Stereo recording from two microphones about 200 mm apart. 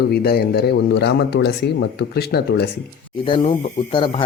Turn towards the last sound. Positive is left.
turn(degrees=25)  # may be behind; listen again after turning